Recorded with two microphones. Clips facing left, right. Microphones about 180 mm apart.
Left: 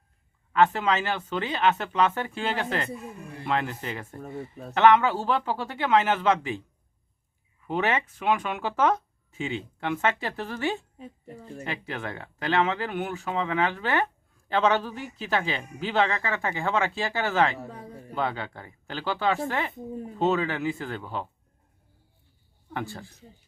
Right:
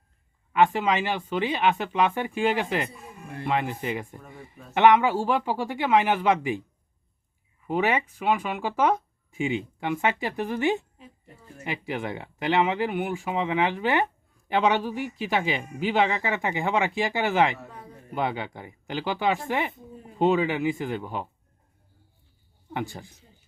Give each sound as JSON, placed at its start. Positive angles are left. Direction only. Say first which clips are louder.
{"t": 0.5, "sound": "speech", "louder": "right 1 dB", "side_deg": -10}
{"t": 4.2, "sound": "speech", "louder": "left 8 dB", "side_deg": 40}
{"t": 4.7, "sound": "speech", "louder": "right 1 dB", "side_deg": -15}
{"t": 7.7, "sound": "speech", "louder": "right 2 dB", "side_deg": -10}
{"t": 10.9, "sound": "a woman's voice", "louder": "left 8 dB", "side_deg": 40}
{"t": 11.6, "sound": "speech", "louder": "right 4 dB", "side_deg": -15}
{"t": 22.7, "sound": "speech", "louder": "right 2 dB", "side_deg": -15}